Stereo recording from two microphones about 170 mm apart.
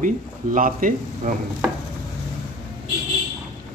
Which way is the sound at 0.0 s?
50° right (ahead or behind).